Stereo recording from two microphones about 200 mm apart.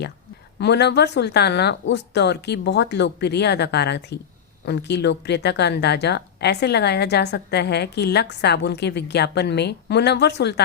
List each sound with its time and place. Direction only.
0.6 s speech: 55° left (ahead or behind)